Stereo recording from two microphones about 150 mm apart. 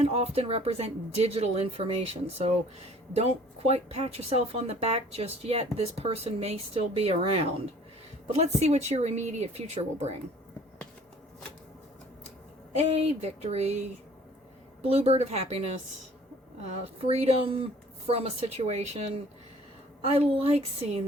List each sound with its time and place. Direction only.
0.0 s speech: 45° right (ahead or behind)
12.7 s speech: 45° right (ahead or behind)
14.8 s speech: 45° right (ahead or behind)
16.6 s speech: 45° right (ahead or behind)